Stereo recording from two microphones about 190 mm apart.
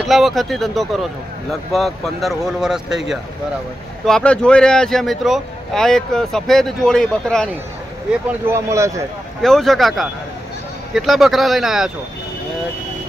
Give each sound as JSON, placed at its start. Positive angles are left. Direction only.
{"t": 0.1, "sound": "speech", "side_deg": 0}
{"t": 8.3, "sound": "speech", "side_deg": -15}
{"t": 9.4, "sound": "speech", "side_deg": 0}